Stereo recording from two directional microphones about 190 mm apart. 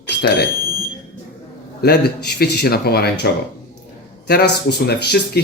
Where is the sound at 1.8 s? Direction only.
60° left (ahead or behind).